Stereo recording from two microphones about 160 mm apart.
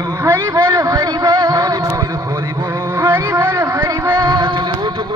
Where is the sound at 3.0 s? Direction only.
15° right (ahead or behind).